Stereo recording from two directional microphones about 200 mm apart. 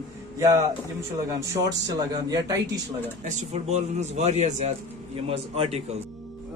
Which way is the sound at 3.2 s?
35° right (ahead or behind).